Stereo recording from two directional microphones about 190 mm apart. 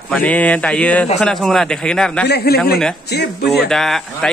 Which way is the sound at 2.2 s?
55° left (ahead or behind).